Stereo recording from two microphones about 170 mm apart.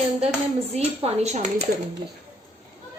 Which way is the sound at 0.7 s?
40° right (ahead or behind).